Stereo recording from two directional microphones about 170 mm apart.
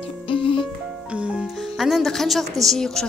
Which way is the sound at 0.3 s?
30° left (ahead or behind).